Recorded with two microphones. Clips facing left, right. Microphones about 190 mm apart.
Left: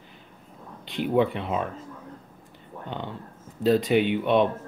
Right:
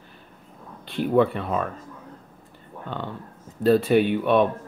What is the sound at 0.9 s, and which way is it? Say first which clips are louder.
Speech: right 3 dB; 15° left (ahead or behind).